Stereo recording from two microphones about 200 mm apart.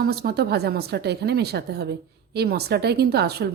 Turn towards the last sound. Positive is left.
turn(degrees=-55)  # may be behind; listen again after turning